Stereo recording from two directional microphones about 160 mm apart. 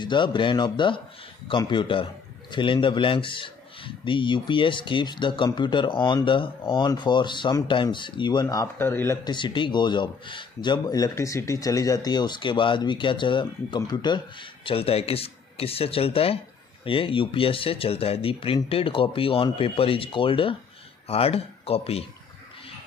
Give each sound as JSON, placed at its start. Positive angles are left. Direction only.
{"t": 0.0, "sound": "speech", "side_deg": 30}
{"t": 9.3, "sound": "speech", "side_deg": 30}